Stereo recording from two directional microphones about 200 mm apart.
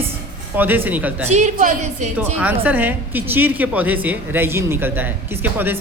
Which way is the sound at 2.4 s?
10° right (ahead or behind).